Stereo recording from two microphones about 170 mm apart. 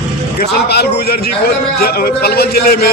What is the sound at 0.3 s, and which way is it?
A man's voice, 70° left (ahead or behind).